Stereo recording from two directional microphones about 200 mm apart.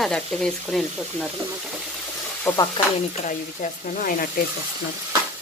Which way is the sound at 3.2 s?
40° left (ahead or behind).